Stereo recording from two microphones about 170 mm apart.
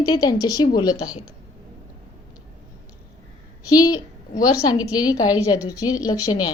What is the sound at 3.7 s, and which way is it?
A woman's voice, 20° left (ahead or behind).